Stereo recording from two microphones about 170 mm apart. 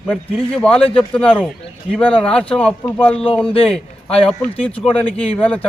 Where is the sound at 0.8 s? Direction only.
35° left (ahead or behind).